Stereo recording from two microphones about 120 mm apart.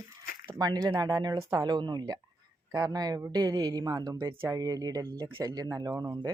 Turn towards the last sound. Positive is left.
turn(degrees=-30)  # may be behind; listen again after turning